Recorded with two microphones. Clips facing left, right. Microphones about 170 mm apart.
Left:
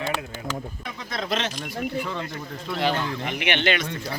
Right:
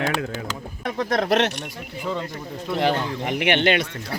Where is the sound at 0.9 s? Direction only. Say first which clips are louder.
Right 9 dB; 70° right (ahead or behind).